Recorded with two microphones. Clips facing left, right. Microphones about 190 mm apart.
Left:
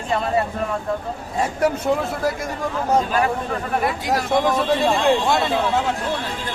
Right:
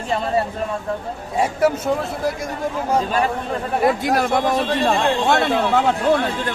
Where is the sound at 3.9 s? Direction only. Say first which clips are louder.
Right 5 dB; 55° right (ahead or behind).